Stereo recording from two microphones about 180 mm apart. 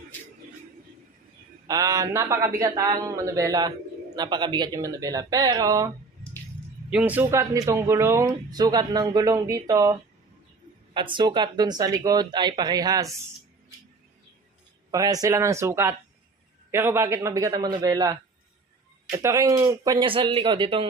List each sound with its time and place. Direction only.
1.6 s speech: 20° right (ahead or behind)
6.9 s speech: 10° right (ahead or behind)
14.8 s speech: 20° right (ahead or behind)